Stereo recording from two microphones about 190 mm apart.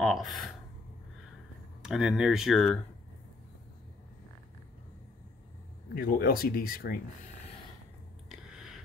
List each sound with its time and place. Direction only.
0.0 s speech: centre (ahead or behind)
1.8 s speech: centre (ahead or behind)
5.9 s speech: 50° left (ahead or behind)
8.3 s a sound: centre (ahead or behind)